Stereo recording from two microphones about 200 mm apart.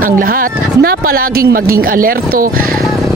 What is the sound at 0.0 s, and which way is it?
Speech, 45° right (ahead or behind).